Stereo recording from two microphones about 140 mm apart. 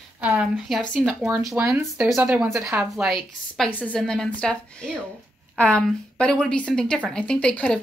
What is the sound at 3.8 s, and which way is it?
Speech, 5° left (ahead or behind).